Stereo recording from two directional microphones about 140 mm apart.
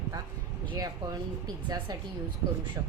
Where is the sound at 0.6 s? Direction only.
30° right (ahead or behind).